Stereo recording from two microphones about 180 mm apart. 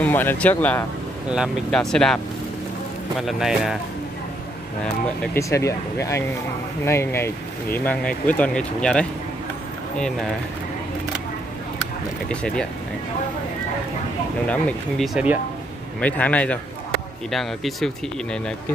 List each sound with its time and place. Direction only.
0.0 s speech: 10° left (ahead or behind)
3.2 s speech: centre (ahead or behind)
5.2 s speech: 15° left (ahead or behind)
12.3 s speech: 5° left (ahead or behind)
14.5 s speech: 5° left (ahead or behind)